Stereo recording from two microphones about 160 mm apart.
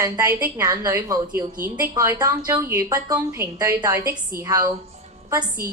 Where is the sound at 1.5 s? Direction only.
60° right (ahead or behind).